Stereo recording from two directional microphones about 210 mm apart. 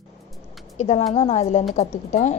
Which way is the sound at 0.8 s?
30° left (ahead or behind).